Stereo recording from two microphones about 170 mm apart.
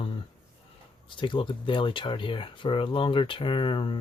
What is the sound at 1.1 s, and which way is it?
Speech, 30° left (ahead or behind).